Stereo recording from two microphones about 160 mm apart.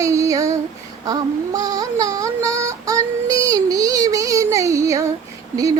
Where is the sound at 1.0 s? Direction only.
25° right (ahead or behind).